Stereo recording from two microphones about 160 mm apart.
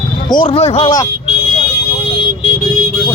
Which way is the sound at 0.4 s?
40° left (ahead or behind).